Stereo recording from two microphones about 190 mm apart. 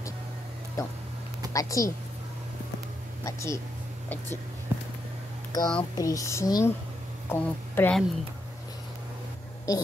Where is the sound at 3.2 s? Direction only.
15° left (ahead or behind).